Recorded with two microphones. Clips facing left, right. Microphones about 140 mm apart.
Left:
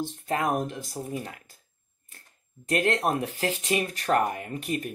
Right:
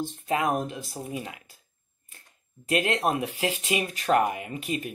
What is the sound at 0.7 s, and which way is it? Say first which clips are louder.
Speech: left 1 dB; 15° right (ahead or behind).